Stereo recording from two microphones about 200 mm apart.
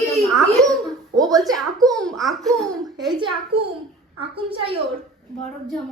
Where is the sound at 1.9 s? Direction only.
Centre (ahead or behind).